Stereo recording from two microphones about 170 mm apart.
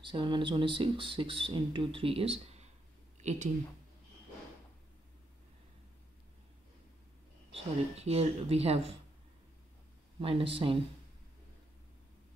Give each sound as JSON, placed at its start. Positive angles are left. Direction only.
{"t": 0.0, "sound": "speech", "side_deg": -30}
{"t": 3.2, "sound": "a sound", "side_deg": -45}
{"t": 7.5, "sound": "speech", "side_deg": -35}
{"t": 10.2, "sound": "speech", "side_deg": -35}